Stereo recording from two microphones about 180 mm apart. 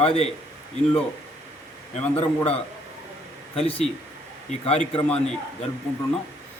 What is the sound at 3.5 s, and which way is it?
A man's voice, 30° left (ahead or behind).